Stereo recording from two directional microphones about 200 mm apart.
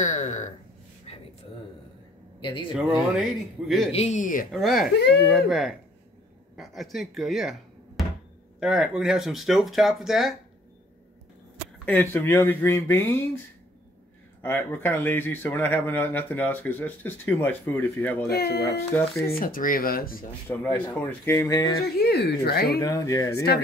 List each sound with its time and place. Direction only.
0.0 s speech: 35° left (ahead or behind)
2.4 s speech: 25° left (ahead or behind)
2.7 s speech: centre (ahead or behind)
3.9 s speech: 35° left (ahead or behind)
4.5 s speech: centre (ahead or behind)
11.8 s speech: 10° left (ahead or behind)
14.4 s speech: 10° left (ahead or behind)
18.3 s speech: 55° left (ahead or behind)
20.4 s speech: 10° left (ahead or behind)
22.0 s speech: 55° left (ahead or behind)
22.8 s speech: 15° left (ahead or behind)